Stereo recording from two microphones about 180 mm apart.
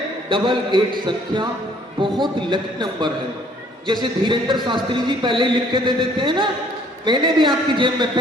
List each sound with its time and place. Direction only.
0.3 s a man's voice: 25° right (ahead or behind)